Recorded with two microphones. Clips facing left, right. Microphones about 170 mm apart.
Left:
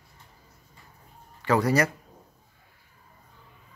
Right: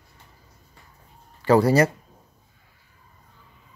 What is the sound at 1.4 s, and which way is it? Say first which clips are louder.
Speech: right 6 dB; 30° right (ahead or behind).